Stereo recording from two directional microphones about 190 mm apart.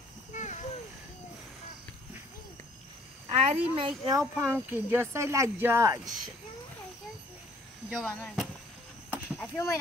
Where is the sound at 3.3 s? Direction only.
35° right (ahead or behind).